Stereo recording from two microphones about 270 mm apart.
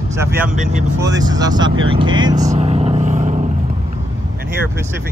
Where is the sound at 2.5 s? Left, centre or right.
Right.